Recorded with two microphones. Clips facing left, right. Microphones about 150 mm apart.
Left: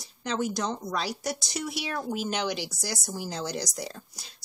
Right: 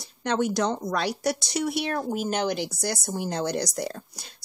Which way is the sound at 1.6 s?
55° right (ahead or behind).